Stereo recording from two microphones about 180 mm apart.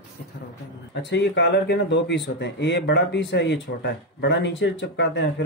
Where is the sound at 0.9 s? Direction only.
70° left (ahead or behind).